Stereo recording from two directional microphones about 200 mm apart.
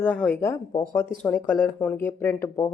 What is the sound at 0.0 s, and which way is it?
Speech, 5° left (ahead or behind).